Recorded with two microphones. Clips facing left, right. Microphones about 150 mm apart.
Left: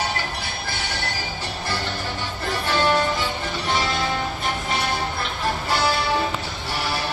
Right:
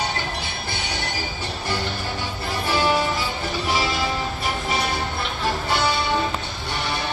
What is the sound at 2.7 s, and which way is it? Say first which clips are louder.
Music: even; 10° right (ahead or behind).